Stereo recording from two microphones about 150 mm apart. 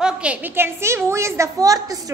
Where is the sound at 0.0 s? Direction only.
10° right (ahead or behind).